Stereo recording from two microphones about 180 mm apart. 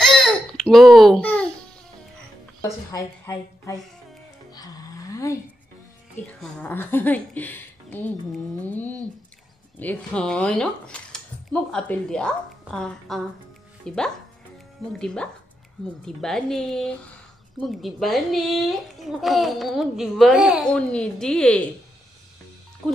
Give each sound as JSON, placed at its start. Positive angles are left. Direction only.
{"t": 0.0, "sound": "babbling", "side_deg": 5}
{"t": 2.9, "sound": "speech", "side_deg": 15}
{"t": 4.5, "sound": "music", "side_deg": 20}
{"t": 6.2, "sound": "a child's voice", "side_deg": 10}